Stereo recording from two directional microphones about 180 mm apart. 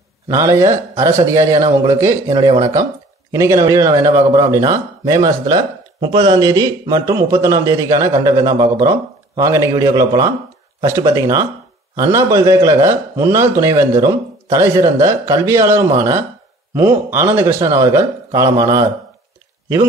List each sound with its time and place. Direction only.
0.3 s a man's voice: 15° right (ahead or behind)